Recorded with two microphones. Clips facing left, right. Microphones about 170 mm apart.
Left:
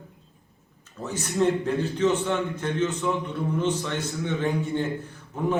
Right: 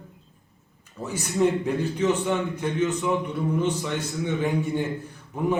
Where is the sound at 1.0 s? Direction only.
15° right (ahead or behind).